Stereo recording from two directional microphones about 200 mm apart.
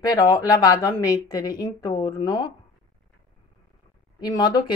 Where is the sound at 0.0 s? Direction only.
15° left (ahead or behind).